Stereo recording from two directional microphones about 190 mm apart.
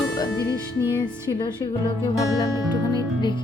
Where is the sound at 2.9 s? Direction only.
25° left (ahead or behind).